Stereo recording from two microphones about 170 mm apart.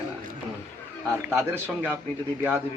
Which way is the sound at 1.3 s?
15° right (ahead or behind).